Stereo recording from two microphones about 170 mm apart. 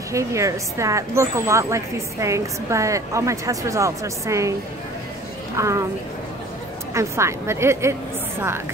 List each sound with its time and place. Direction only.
0.1 s speech: 15° right (ahead or behind)
5.6 s speech: 15° right (ahead or behind)
6.9 s speech: 15° right (ahead or behind)